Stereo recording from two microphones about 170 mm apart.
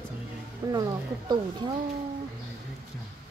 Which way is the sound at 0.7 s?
25° right (ahead or behind).